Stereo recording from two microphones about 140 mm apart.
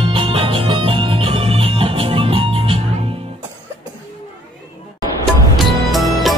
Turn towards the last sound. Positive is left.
turn(degrees=0)  # may be behind; listen again after turning